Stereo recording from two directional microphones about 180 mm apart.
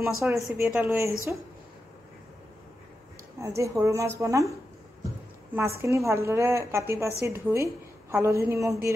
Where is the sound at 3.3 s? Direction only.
15° right (ahead or behind).